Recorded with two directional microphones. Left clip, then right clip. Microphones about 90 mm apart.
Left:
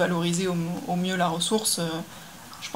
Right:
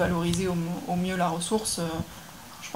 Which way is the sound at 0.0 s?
25° left (ahead or behind).